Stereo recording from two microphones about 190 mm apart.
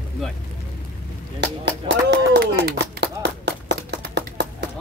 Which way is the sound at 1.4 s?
65° right (ahead or behind).